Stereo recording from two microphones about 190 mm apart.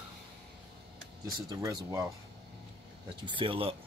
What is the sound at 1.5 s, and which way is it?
Speech, 15° right (ahead or behind).